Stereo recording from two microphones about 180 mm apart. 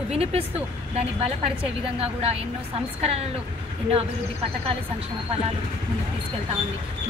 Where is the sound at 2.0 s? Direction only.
35° right (ahead or behind).